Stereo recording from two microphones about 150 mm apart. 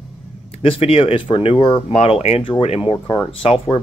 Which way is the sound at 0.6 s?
40° left (ahead or behind).